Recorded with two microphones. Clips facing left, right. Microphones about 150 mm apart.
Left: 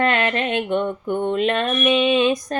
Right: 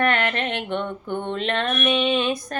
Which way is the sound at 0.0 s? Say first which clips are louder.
Left 2 dB; 20° left (ahead or behind).